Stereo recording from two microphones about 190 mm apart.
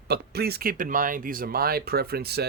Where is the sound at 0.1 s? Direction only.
55° right (ahead or behind).